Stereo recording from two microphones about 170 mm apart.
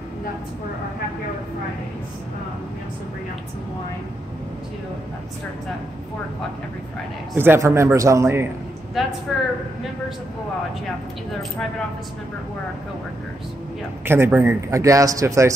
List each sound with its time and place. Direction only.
7.3 s a man's voice: 15° right (ahead or behind)
9.3 s a woman's voice: centre (ahead or behind)
14.0 s a man's voice: 15° right (ahead or behind)